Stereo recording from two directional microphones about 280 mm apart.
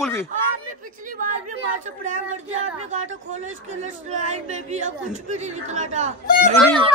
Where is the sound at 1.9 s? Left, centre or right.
Right.